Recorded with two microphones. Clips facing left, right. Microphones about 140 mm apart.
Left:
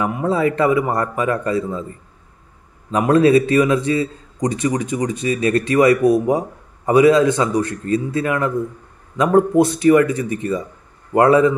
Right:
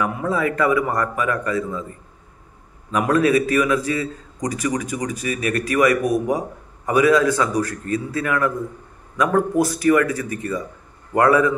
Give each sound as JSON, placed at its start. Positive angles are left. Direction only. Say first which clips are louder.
{"t": 0.0, "sound": "a man's voice", "louder": "left 3 dB", "side_deg": 25}
{"t": 2.9, "sound": "a man's voice", "louder": "left 4 dB", "side_deg": 30}